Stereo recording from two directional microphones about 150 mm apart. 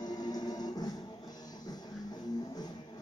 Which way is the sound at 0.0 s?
25° left (ahead or behind).